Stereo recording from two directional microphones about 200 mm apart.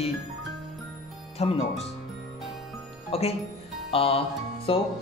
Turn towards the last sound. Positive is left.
turn(degrees=25)  # may be behind; listen again after turning